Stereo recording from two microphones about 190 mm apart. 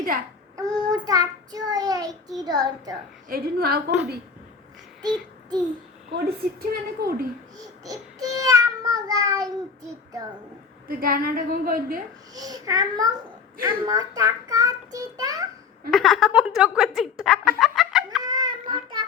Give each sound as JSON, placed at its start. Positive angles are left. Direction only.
{"t": 0.5, "sound": "child singing", "side_deg": -20}
{"t": 3.2, "sound": "a woman's voice", "side_deg": -50}
{"t": 5.0, "sound": "child singing", "side_deg": -20}
{"t": 6.1, "sound": "a woman's voice", "side_deg": -55}
{"t": 7.9, "sound": "child singing", "side_deg": -20}
{"t": 10.8, "sound": "a woman's voice", "side_deg": -50}
{"t": 12.3, "sound": "child singing", "side_deg": -20}
{"t": 15.9, "sound": "a woman's voice", "side_deg": 0}
{"t": 18.2, "sound": "fowl", "side_deg": -20}